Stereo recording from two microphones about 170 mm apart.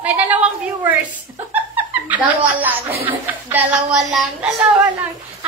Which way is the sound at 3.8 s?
40° right (ahead or behind).